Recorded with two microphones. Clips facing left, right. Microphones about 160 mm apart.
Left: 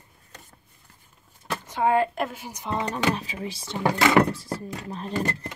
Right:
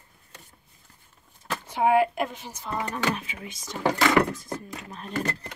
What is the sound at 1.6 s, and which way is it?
Speech, 10° right (ahead or behind).